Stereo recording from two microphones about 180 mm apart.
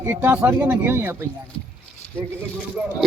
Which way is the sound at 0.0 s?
10° right (ahead or behind).